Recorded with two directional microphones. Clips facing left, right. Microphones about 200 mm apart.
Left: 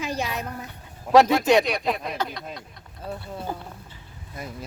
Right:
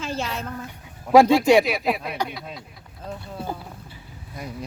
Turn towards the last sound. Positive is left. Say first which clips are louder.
# right 2 dB
turn(degrees=5)  # may be behind; listen again after turning